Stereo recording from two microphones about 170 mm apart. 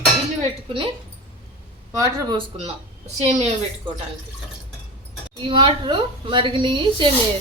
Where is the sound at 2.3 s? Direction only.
40° right (ahead or behind).